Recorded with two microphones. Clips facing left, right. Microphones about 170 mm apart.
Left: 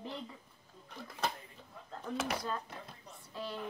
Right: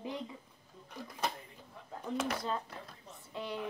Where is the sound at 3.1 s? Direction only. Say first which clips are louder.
Right 1 dB; 20° right (ahead or behind).